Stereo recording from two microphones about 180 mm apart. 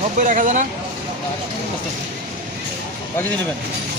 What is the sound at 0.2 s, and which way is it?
Speech, 45° right (ahead or behind).